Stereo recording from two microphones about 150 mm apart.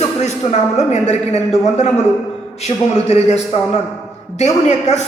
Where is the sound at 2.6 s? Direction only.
45° left (ahead or behind).